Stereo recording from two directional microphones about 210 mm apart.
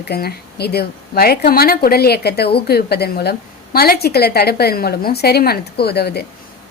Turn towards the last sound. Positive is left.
turn(degrees=50)  # may be behind; listen again after turning